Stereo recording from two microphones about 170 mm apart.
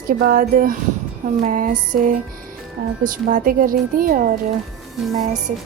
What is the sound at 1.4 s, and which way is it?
Music, 55° right (ahead or behind).